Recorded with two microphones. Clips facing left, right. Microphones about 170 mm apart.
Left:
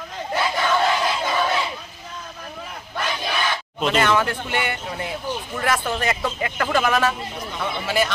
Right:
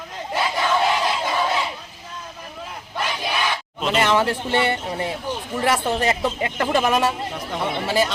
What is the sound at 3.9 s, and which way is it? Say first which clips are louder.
Speech: right 2 dB; 25° right (ahead or behind).